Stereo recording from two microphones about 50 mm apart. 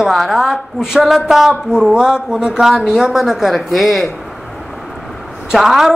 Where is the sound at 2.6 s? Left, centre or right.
Centre.